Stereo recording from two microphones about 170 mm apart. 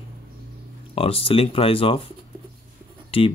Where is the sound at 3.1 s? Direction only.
35° left (ahead or behind).